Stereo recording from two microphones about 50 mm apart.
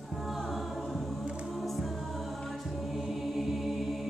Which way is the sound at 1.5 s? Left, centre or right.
Centre.